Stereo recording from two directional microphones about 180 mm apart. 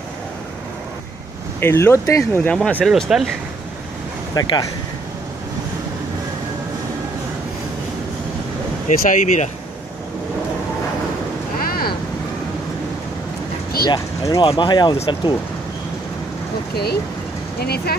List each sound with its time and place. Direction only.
1.6 s speech: 15° left (ahead or behind); by 3.3 s centre (ahead or behind)
4.4 s speech: 20° left (ahead or behind)
8.8 s speech: 40° left (ahead or behind)
13.8 s speech: 20° left (ahead or behind)
16.7 s speech: 60° left (ahead or behind)